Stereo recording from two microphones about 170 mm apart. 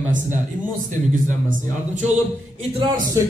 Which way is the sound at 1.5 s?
45° right (ahead or behind).